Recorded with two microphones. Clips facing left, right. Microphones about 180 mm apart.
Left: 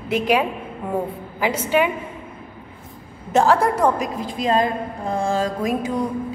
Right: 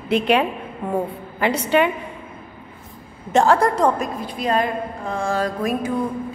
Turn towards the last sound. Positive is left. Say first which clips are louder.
# even
turn(degrees=20)  # may be behind; listen again after turning